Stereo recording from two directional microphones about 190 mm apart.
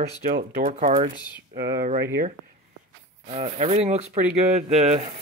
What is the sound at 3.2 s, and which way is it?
Speech, 40° right (ahead or behind).